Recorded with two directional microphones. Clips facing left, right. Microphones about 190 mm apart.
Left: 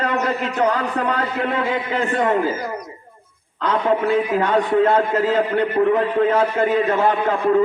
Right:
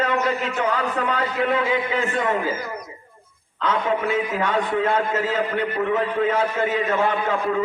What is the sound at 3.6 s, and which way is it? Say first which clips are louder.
A man's voice: left 3 dB; 35° left (ahead or behind).